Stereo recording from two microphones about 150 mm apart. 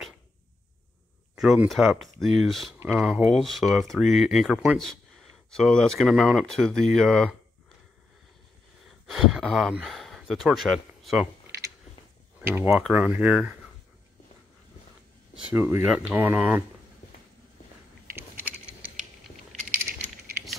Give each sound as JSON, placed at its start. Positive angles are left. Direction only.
{"t": 1.3, "sound": "speech", "side_deg": -5}
{"t": 8.8, "sound": "speech", "side_deg": 0}
{"t": 12.4, "sound": "speech", "side_deg": -15}
{"t": 12.8, "sound": "speech", "side_deg": -5}
{"t": 15.5, "sound": "speech", "side_deg": -15}